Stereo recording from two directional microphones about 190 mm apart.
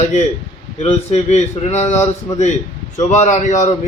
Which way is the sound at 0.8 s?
35° left (ahead or behind).